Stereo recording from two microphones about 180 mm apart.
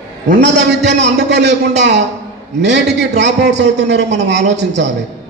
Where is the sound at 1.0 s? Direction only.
70° right (ahead or behind).